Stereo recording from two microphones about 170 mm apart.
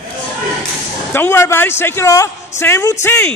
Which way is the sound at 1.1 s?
15° left (ahead or behind).